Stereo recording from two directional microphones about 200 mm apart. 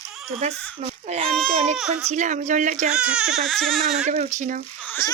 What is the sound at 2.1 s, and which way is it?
Speech, 35° right (ahead or behind).